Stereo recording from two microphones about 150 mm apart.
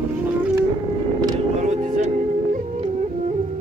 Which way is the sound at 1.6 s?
50° right (ahead or behind).